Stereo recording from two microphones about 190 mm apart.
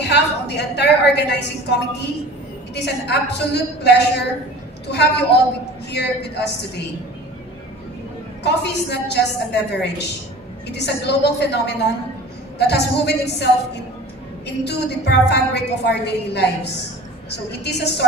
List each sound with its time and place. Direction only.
0.0 s a woman's voice: 60° left (ahead or behind)
8.5 s a woman's voice: 65° left (ahead or behind)